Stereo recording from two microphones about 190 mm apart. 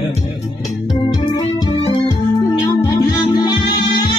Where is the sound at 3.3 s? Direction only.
25° left (ahead or behind).